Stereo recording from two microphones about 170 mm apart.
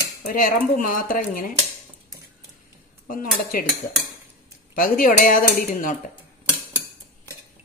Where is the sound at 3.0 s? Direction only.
55° left (ahead or behind).